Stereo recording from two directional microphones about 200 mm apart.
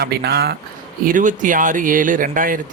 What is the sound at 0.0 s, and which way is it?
Speech, 55° right (ahead or behind).